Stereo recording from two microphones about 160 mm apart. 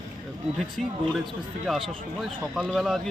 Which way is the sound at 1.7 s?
Centre (ahead or behind).